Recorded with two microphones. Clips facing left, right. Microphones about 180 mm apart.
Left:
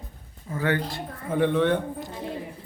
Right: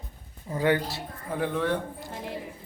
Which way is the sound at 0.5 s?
15° right (ahead or behind).